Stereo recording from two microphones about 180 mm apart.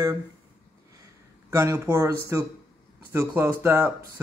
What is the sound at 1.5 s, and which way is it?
Speech, 15° right (ahead or behind).